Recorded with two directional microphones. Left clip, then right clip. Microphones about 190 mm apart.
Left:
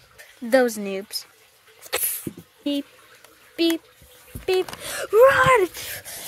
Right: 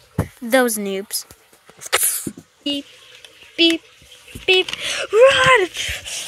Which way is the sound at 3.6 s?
Centre (ahead or behind).